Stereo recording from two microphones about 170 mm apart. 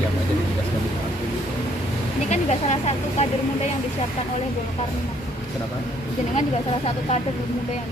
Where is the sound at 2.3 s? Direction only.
40° left (ahead or behind).